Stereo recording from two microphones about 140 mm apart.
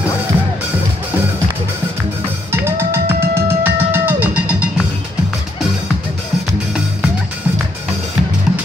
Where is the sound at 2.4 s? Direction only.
15° right (ahead or behind).